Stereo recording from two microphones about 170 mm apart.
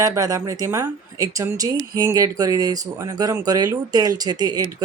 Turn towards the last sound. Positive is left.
turn(degrees=-25)  # may be behind; listen again after turning